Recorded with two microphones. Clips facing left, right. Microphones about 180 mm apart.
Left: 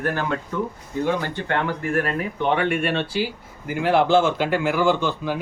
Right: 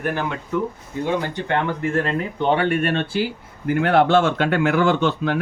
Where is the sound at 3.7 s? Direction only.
65° right (ahead or behind).